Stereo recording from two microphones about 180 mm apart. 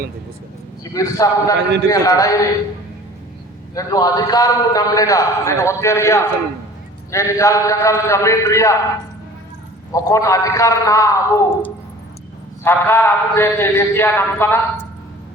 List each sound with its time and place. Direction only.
0.9 s a man's voice: 15° left (ahead or behind)
3.8 s a man's voice: 20° left (ahead or behind)
9.9 s a man's voice: 20° left (ahead or behind)